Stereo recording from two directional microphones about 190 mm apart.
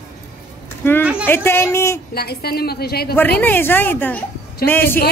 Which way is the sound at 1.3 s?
15° left (ahead or behind).